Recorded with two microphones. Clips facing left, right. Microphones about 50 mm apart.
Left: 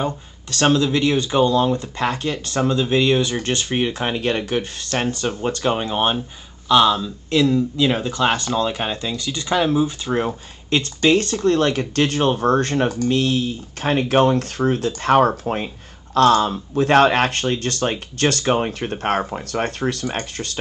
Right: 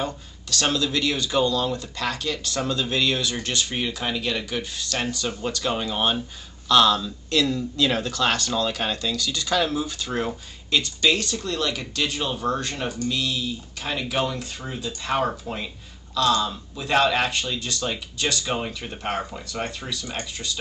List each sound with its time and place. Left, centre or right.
0.0 s speech: left
6.7 s speech: centre; by 20.5 s left